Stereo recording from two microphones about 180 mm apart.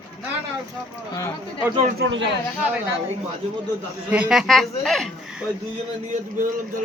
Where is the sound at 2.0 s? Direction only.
90° right.